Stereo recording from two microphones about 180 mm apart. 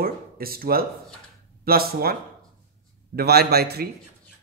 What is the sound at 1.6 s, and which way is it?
Speech, 55° right (ahead or behind).